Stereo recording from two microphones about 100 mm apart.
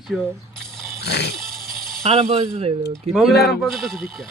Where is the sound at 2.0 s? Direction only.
75° right (ahead or behind).